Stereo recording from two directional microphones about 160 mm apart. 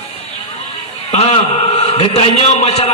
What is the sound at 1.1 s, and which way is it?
A man's voice, 45° left (ahead or behind).